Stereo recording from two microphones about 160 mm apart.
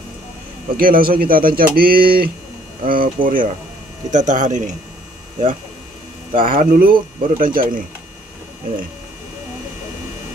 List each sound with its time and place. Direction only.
0.7 s speech: 60° right (ahead or behind)
6.3 s speech: 60° right (ahead or behind)